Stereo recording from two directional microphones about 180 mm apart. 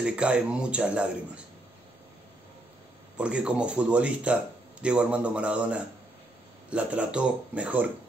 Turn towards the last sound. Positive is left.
turn(degrees=-10)  # may be behind; listen again after turning